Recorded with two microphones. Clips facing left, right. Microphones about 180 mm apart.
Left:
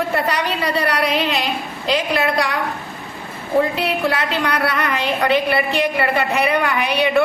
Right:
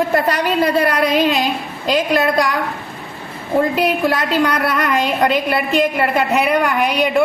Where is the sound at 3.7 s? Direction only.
45° right (ahead or behind).